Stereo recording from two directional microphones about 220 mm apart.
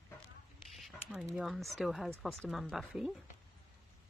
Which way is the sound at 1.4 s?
Centre (ahead or behind).